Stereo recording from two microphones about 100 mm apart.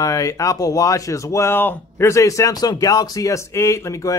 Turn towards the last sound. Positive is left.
turn(degrees=30)  # may be behind; listen again after turning